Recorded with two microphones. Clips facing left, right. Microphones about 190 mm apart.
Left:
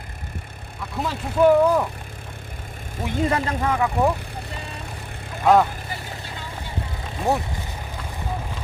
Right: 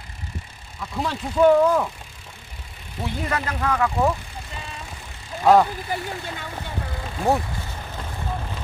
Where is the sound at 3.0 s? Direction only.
15° left (ahead or behind).